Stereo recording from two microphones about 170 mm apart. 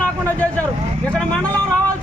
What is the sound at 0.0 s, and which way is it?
Vehicle, 10° left (ahead or behind).